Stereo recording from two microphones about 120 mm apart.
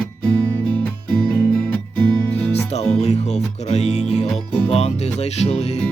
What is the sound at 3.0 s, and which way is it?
Music, 70° left (ahead or behind).